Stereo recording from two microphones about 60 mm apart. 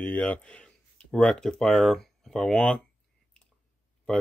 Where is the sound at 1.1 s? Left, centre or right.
Centre.